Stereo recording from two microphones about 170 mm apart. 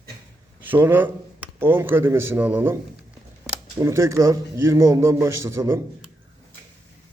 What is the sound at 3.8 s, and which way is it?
A man's voice, 15° right (ahead or behind).